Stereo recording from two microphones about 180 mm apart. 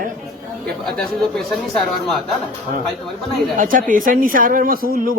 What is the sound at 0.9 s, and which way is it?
Speech, centre (ahead or behind).